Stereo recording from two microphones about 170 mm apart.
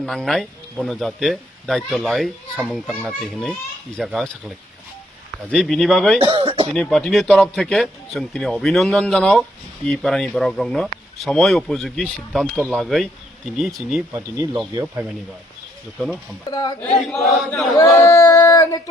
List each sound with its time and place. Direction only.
0.0 s speech: centre (ahead or behind)
6.1 s a sound: 35° right (ahead or behind)
6.7 s speech: 5° left (ahead or behind)
14.1 s speech: 15° right (ahead or behind)
16.5 s a woman's voice: 20° left (ahead or behind)
16.8 s speech: 5° left (ahead or behind)
17.7 s speech: 20° left (ahead or behind)